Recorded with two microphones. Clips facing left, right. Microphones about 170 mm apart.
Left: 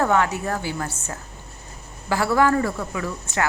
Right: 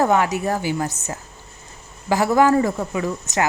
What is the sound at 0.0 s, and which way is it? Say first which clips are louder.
Speech: right 2 dB; 15° right (ahead or behind).